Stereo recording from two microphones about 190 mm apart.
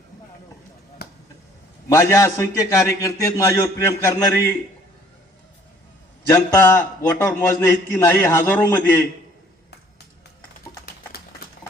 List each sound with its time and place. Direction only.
1.0 s a sound: 55° left (ahead or behind)
1.9 s a man's voice: 15° left (ahead or behind)
6.2 s a man's voice: 15° left (ahead or behind)